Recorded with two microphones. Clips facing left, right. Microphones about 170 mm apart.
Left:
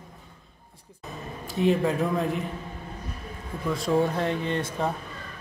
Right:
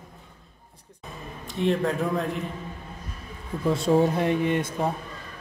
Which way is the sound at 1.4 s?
Centre (ahead or behind).